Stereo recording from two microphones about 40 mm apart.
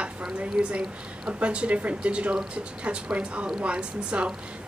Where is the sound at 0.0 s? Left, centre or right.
Right.